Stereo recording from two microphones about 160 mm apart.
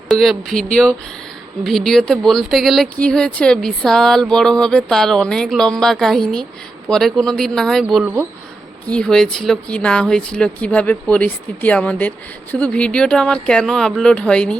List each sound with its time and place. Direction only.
0.1 s speech: centre (ahead or behind)
8.0 s speech: 10° right (ahead or behind)
8.9 s speech: 5° left (ahead or behind)